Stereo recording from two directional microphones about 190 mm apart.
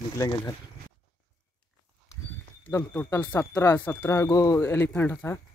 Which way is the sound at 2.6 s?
10° left (ahead or behind).